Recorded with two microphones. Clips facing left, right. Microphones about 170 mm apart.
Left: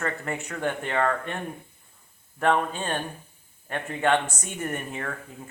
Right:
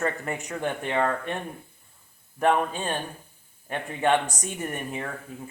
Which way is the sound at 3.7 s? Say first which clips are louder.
Even; 15° right (ahead or behind).